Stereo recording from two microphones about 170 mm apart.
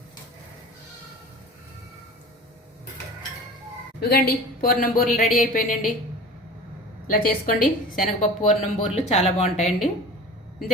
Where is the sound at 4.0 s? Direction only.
65° left (ahead or behind).